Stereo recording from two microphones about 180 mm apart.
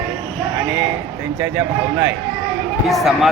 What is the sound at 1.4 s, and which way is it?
Speech, 15° right (ahead or behind).